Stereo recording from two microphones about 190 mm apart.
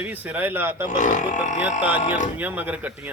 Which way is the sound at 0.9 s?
40° left (ahead or behind).